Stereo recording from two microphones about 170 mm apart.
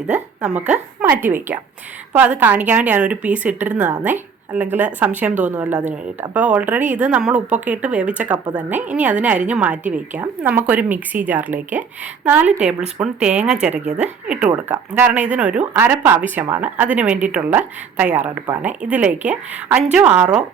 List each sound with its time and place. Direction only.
0.1 s a woman's voice: 10° right (ahead or behind)
6.7 s speech: 50° right (ahead or behind)
7.0 s a woman's voice: 5° right (ahead or behind)